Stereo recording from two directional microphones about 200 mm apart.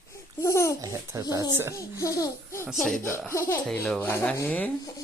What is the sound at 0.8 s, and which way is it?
Babbling, 15° right (ahead or behind).